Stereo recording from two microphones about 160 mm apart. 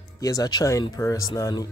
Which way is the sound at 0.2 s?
25° left (ahead or behind).